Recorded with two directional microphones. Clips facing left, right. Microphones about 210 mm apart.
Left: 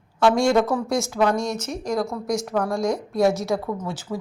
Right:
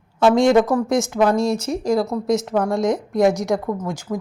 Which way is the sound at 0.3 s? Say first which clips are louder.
Right 4 dB; 20° right (ahead or behind).